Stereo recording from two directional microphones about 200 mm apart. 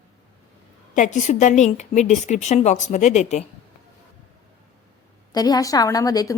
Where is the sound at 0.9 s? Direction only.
40° left (ahead or behind).